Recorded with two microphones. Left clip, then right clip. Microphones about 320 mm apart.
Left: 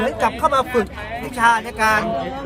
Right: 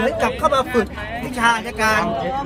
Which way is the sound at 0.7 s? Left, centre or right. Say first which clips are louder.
Even; left.